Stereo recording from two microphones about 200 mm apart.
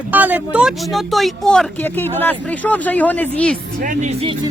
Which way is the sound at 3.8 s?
40° right (ahead or behind).